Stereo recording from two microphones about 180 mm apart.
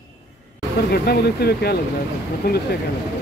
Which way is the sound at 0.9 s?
60° left (ahead or behind).